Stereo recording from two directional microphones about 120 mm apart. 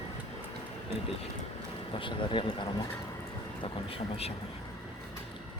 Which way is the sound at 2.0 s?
45° left (ahead or behind).